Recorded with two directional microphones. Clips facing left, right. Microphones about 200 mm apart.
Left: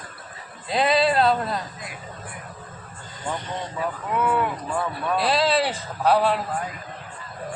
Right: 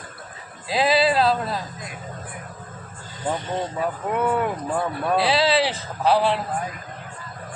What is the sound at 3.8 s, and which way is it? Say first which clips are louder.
Speech: even; 45° right (ahead or behind).